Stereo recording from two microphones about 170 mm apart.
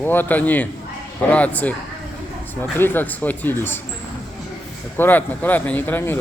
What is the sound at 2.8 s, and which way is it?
Speech, 10° left (ahead or behind).